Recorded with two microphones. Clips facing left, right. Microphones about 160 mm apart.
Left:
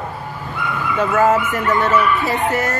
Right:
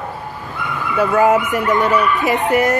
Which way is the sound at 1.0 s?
15° right (ahead or behind).